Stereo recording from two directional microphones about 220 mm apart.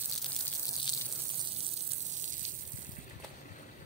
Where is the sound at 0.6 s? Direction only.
15° left (ahead or behind).